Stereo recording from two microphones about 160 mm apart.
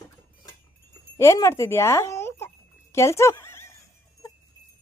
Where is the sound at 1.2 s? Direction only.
20° left (ahead or behind).